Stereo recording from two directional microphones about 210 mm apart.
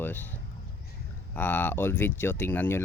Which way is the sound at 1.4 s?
10° left (ahead or behind).